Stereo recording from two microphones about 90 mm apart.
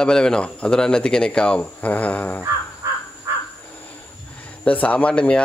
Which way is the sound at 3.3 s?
30° right (ahead or behind).